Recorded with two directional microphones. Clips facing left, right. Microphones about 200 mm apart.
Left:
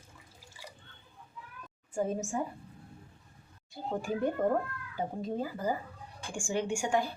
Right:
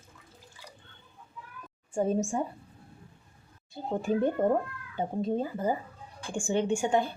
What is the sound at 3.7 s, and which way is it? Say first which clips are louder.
Speech: right 5 dB; 20° right (ahead or behind).